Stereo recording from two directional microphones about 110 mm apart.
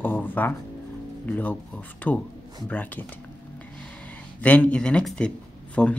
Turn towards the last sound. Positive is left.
turn(degrees=10)  # may be behind; listen again after turning